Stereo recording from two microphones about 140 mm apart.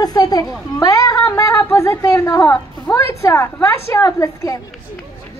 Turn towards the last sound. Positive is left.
turn(degrees=25)  # may be behind; listen again after turning